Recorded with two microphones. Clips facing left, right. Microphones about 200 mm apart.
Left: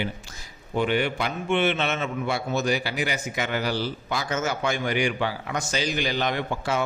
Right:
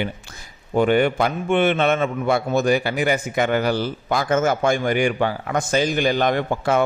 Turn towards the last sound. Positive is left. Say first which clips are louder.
# right 7 dB
turn(degrees=-55)  # may be behind; listen again after turning